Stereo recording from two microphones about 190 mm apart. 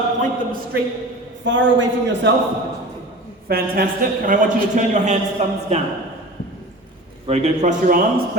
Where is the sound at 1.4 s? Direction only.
75° right (ahead or behind).